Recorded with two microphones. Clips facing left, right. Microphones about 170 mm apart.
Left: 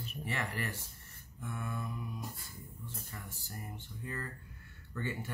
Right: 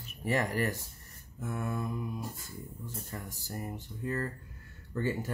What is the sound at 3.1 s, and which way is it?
Speech, 40° right (ahead or behind).